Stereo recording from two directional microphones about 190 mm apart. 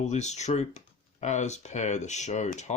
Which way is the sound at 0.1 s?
35° left (ahead or behind).